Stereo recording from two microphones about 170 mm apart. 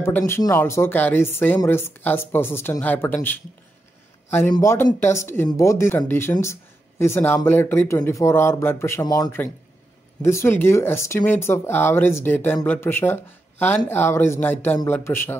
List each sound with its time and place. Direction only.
0.0 s speech: 15° left (ahead or behind)
4.3 s speech: 10° left (ahead or behind)